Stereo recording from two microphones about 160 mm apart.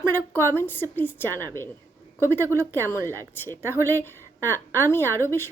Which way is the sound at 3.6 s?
15° right (ahead or behind).